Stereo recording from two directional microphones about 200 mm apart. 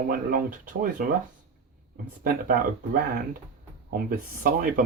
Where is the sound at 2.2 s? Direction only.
45° right (ahead or behind).